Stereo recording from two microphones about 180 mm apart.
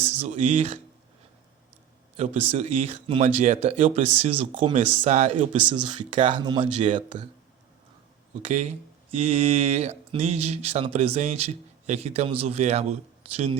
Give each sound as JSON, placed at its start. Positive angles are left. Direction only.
{"t": 0.2, "sound": "speech", "side_deg": -35}
{"t": 2.1, "sound": "speech", "side_deg": -40}
{"t": 9.1, "sound": "speech", "side_deg": -35}